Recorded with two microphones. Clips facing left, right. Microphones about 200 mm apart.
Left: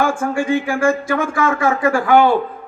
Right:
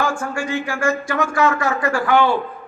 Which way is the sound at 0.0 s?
55° left (ahead or behind).